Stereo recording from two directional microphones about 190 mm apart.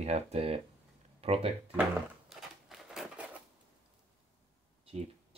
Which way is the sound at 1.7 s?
5° right (ahead or behind).